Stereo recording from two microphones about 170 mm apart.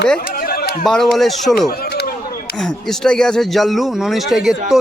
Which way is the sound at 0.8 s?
Centre (ahead or behind).